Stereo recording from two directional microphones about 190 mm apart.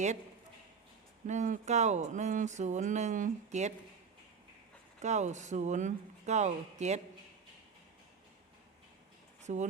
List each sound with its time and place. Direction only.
1.3 s speech: 40° right (ahead or behind)
4.9 s speech: 40° right (ahead or behind)
9.4 s speech: 40° right (ahead or behind)